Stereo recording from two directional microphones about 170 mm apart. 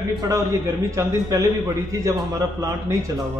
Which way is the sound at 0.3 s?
20° right (ahead or behind).